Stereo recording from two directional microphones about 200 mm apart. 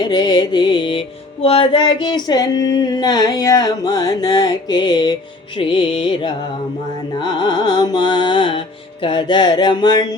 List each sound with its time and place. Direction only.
0.0 s music: 20° left (ahead or behind)